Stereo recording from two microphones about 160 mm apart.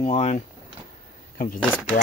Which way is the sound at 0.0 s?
45° left (ahead or behind).